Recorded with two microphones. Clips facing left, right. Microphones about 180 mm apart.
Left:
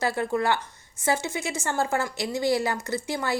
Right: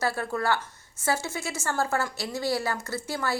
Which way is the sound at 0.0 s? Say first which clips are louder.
Left 3 dB; 20° left (ahead or behind).